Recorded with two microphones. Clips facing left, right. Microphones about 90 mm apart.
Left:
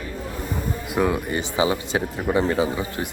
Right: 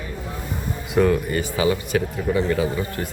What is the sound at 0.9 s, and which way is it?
Speech, 10° left (ahead or behind).